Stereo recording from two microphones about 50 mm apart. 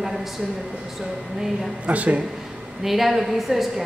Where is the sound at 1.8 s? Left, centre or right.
Right.